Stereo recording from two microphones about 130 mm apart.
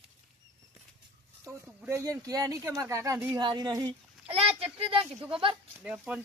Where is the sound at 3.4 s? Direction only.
35° right (ahead or behind).